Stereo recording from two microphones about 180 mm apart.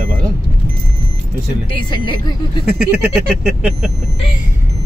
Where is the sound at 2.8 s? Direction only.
5° right (ahead or behind).